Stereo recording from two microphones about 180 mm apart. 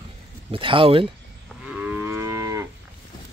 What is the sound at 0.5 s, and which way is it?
Speech, 30° right (ahead or behind).